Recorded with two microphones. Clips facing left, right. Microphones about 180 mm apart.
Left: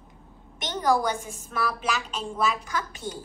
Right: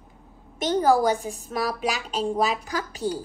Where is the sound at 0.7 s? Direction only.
35° right (ahead or behind).